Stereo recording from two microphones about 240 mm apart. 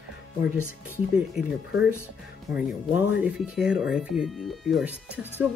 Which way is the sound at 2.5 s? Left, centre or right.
Centre.